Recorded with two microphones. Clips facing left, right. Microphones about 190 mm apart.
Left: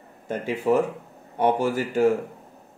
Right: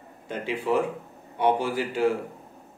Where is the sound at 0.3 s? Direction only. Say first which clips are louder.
Left 4 dB; 45° left (ahead or behind).